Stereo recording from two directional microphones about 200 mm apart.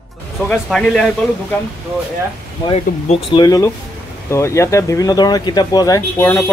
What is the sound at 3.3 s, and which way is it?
Speech, 20° left (ahead or behind).